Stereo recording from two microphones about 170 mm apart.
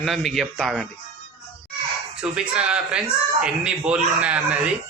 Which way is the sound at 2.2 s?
5° right (ahead or behind).